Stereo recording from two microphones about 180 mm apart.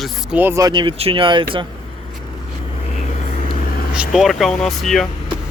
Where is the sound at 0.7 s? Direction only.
30° right (ahead or behind).